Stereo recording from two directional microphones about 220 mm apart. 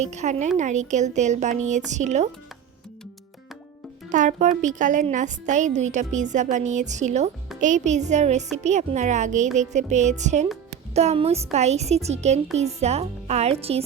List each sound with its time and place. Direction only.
0.0 s a woman's voice: 30° right (ahead or behind)
4.1 s a woman's voice: 35° right (ahead or behind)